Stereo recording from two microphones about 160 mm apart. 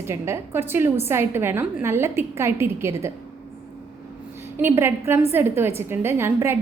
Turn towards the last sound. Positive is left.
turn(degrees=-15)  # may be behind; listen again after turning